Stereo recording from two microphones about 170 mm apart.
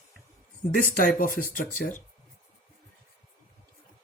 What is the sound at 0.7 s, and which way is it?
Speech, 60° left (ahead or behind).